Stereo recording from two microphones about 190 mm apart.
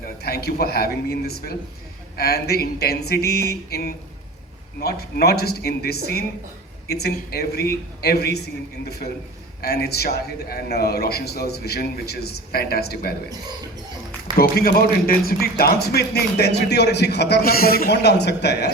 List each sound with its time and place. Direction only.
0.2 s a man's voice: 55° left (ahead or behind)
9.6 s a man's voice: 55° left (ahead or behind)
14.3 s a man's voice: 50° left (ahead or behind)